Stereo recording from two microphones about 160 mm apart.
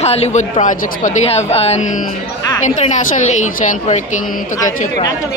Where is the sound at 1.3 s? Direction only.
40° left (ahead or behind).